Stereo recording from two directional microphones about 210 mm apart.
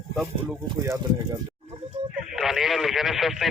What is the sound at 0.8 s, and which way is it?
Speech, 15° right (ahead or behind).